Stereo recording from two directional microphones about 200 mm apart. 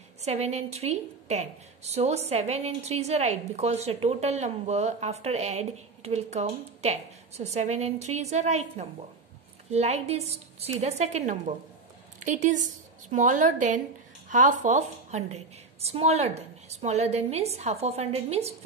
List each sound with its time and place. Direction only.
0.2 s a woman's voice: 30° right (ahead or behind)